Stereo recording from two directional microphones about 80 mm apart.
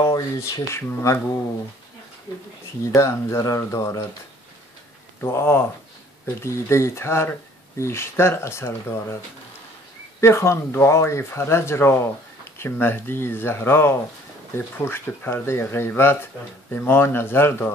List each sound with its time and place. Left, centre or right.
0.0 s speech: left
3.0 s speech: left
5.2 s speech: left
10.2 s speech: left